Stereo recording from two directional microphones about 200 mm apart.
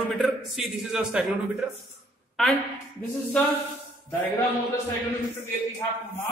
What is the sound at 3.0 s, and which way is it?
Speech, 5° left (ahead or behind).